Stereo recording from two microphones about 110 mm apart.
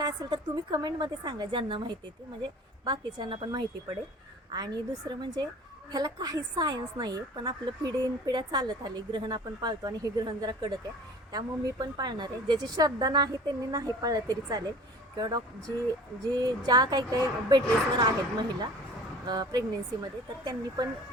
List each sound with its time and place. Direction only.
0.0 s a woman's voice: 35° right (ahead or behind)
16.2 s a woman's voice: 35° right (ahead or behind)
19.3 s a woman's voice: 40° right (ahead or behind)